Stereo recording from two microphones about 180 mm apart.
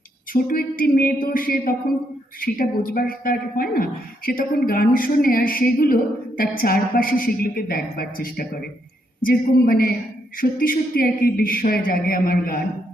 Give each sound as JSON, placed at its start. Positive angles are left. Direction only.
{"t": 0.3, "sound": "a woman's voice", "side_deg": 55}